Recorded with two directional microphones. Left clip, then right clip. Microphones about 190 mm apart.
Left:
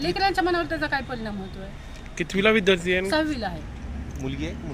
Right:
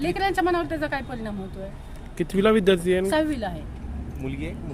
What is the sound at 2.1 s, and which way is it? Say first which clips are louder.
Speech: even; 35° right (ahead or behind).